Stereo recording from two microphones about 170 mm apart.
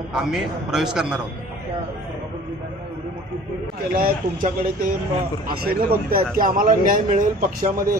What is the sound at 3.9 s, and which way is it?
A man's voice, 55° right (ahead or behind).